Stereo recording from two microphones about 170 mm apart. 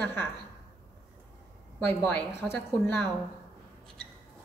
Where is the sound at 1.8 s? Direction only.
10° left (ahead or behind).